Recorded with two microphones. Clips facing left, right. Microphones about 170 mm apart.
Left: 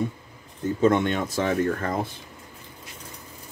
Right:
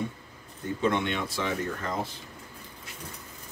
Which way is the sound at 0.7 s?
45° left (ahead or behind).